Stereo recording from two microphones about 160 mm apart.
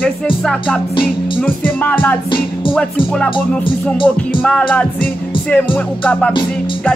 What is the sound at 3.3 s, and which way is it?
Music, 30° left (ahead or behind).